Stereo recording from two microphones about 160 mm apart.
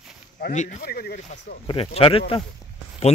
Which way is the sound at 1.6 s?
35° left (ahead or behind).